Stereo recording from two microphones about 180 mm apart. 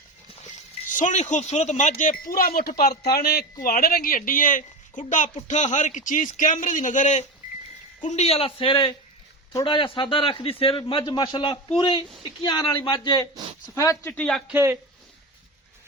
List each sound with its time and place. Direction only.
0.9 s a man's voice: 45° left (ahead or behind); by 13.2 s 25° left (ahead or behind)
13.7 s speech: 15° left (ahead or behind)
14.5 s speech: 15° right (ahead or behind)